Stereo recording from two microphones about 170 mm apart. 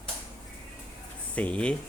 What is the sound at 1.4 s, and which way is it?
Speech, 10° left (ahead or behind).